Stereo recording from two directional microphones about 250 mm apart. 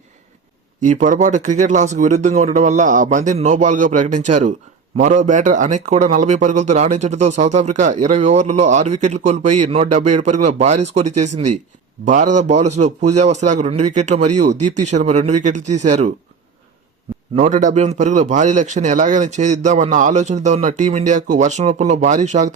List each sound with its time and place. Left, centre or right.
0.8 s a man's voice: right
12.0 s a man's voice: right
17.3 s a man's voice: right